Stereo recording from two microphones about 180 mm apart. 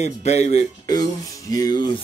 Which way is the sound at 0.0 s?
40° left (ahead or behind).